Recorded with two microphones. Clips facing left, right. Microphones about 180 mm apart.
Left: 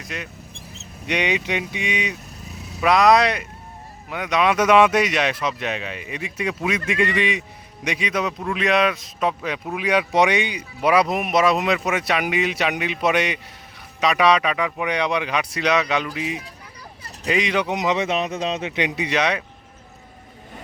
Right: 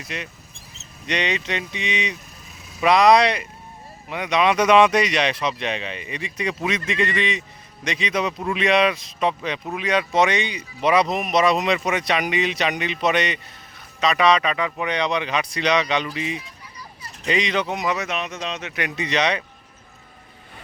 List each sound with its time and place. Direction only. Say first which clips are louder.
0.0 s speech: even; centre (ahead or behind); by 18.8 s 30° left (ahead or behind)
18.8 s speech: even; 15° left (ahead or behind)